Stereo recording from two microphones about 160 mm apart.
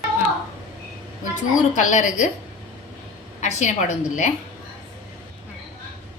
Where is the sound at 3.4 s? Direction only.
45° left (ahead or behind).